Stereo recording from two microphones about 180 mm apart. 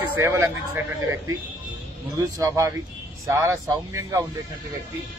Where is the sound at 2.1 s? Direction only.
20° right (ahead or behind).